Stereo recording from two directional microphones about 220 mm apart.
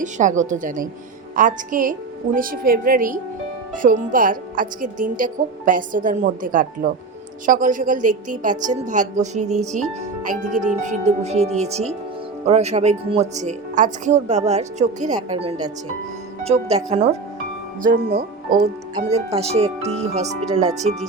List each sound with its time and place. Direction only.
0.0 s a woman's voice: 35° right (ahead or behind)
18.9 s speech: 30° right (ahead or behind)